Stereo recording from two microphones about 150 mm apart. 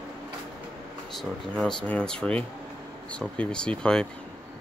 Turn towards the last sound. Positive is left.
turn(degrees=5)  # may be behind; listen again after turning